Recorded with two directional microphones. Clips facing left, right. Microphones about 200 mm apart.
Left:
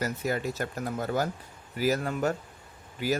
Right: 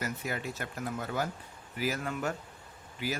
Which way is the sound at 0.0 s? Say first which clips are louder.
Left 6 dB; 40° left (ahead or behind).